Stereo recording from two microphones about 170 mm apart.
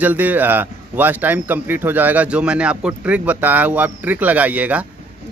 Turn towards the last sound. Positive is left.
turn(degrees=-10)  # may be behind; listen again after turning